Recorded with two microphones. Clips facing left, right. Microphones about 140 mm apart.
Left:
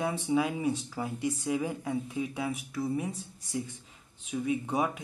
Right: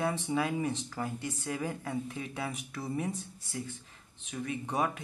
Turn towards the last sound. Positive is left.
turn(degrees=10)  # may be behind; listen again after turning